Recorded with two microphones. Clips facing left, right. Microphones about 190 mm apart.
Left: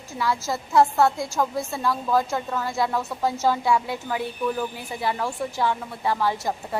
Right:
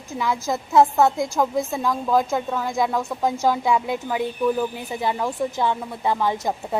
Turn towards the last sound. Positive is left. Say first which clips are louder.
# right 2 dB
turn(degrees=-20)  # may be behind; listen again after turning